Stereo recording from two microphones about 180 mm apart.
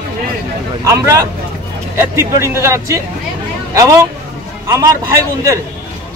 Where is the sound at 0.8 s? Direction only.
15° right (ahead or behind).